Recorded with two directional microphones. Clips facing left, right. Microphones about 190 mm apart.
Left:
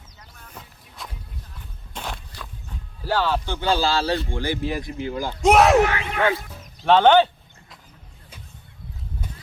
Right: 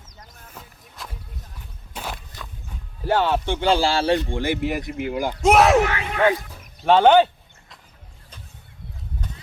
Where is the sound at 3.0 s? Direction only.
20° right (ahead or behind).